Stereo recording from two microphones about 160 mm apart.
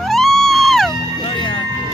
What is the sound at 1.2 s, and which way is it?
Music, 30° left (ahead or behind).